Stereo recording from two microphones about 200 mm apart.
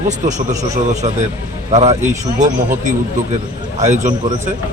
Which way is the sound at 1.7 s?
35° right (ahead or behind).